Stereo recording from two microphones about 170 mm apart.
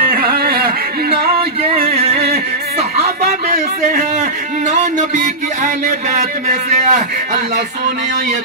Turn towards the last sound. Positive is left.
turn(degrees=-45)  # may be behind; listen again after turning